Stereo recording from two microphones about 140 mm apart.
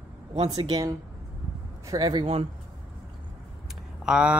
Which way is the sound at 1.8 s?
25° right (ahead or behind).